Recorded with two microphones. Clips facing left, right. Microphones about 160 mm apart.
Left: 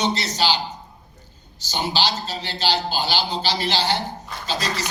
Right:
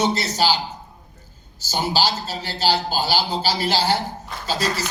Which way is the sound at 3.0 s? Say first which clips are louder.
Right 2 dB; 10° right (ahead or behind).